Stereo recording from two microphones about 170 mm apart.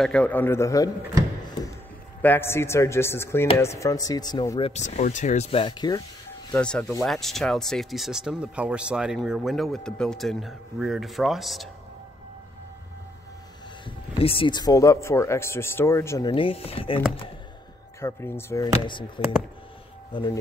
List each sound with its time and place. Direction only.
0.0 s speech: 5° left (ahead or behind)
2.2 s speech: 15° left (ahead or behind)
6.5 s speech: 5° left (ahead or behind)
13.8 s speech: 30° left (ahead or behind); by 16.3 s 15° left (ahead or behind)
16.3 s speech: 30° left (ahead or behind)
18.0 s speech: 15° left (ahead or behind)
18.7 s speech: 30° left (ahead or behind)